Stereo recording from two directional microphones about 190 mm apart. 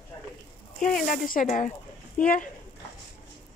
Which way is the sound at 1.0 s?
45° left (ahead or behind).